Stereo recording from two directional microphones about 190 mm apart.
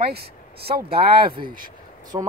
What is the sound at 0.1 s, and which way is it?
Speech, 55° right (ahead or behind).